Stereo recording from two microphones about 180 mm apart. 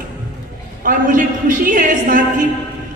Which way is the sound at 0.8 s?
50° right (ahead or behind).